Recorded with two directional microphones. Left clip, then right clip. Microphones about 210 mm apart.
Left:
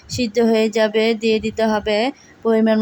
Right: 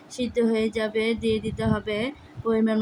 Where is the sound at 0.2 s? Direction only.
20° left (ahead or behind).